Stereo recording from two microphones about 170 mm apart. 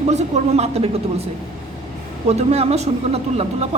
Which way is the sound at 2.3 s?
40° right (ahead or behind).